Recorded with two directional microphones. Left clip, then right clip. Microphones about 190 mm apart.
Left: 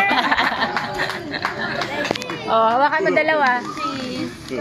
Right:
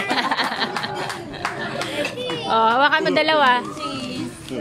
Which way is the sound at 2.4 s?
20° right (ahead or behind).